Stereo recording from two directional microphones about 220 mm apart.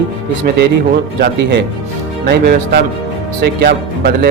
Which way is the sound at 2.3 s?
45° right (ahead or behind).